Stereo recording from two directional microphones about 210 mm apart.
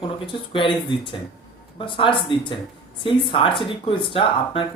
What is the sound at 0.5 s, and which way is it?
Speech, 25° left (ahead or behind).